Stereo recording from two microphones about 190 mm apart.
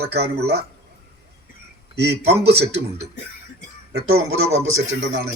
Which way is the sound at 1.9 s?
60° right (ahead or behind).